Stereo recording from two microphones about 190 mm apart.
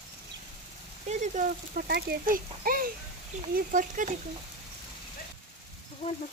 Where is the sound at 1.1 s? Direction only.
40° right (ahead or behind).